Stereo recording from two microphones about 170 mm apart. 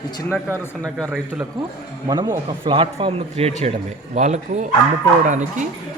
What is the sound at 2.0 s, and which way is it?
Speech, 25° right (ahead or behind).